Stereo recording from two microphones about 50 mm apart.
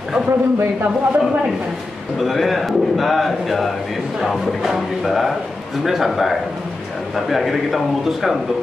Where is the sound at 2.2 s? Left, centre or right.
Centre.